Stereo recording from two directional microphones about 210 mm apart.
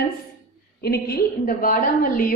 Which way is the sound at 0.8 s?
50° left (ahead or behind).